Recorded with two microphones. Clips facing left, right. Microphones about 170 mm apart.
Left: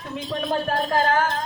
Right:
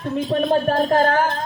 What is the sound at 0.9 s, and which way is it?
Speech, 55° right (ahead or behind).